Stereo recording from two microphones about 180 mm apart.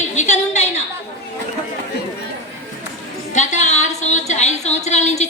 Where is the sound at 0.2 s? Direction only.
40° left (ahead or behind).